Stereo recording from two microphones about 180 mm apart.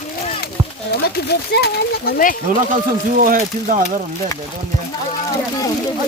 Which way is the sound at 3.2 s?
50° right (ahead or behind).